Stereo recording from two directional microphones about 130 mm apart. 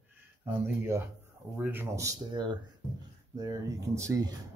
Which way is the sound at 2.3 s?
35° right (ahead or behind).